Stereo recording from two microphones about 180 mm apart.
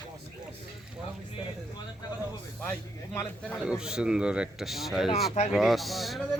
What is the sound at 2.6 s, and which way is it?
Speech, 15° left (ahead or behind).